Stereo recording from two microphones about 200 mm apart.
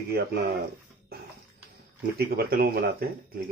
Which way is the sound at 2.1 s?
50° right (ahead or behind).